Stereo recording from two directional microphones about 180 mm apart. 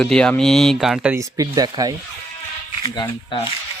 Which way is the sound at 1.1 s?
20° right (ahead or behind).